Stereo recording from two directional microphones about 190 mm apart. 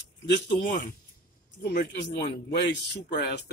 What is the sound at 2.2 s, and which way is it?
Speech, 65° left (ahead or behind).